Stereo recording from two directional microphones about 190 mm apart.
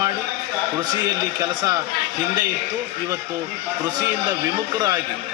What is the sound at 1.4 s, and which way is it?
Speech, 20° right (ahead or behind).